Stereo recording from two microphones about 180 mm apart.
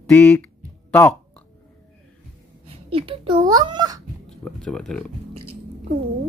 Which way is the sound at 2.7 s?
30° right (ahead or behind).